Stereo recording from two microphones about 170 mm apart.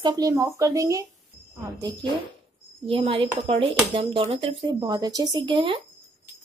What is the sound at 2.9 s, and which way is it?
Speech, 35° right (ahead or behind).